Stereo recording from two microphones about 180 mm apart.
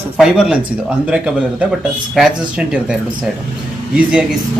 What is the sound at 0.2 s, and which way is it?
Speech, 5° right (ahead or behind).